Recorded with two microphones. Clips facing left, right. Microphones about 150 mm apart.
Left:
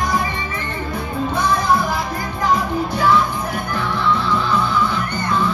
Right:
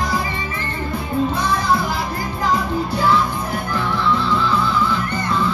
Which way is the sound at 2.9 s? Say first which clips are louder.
Left 1 dB; 30° right (ahead or behind).